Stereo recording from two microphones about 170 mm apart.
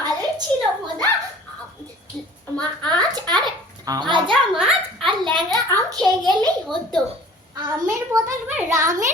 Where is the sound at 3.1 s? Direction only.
25° right (ahead or behind).